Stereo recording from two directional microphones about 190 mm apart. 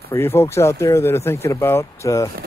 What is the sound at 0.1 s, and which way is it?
Speech, 10° left (ahead or behind).